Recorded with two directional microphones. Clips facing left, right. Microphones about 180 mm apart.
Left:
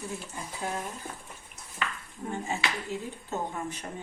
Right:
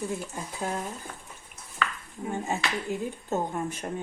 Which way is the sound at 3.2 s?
45° right (ahead or behind).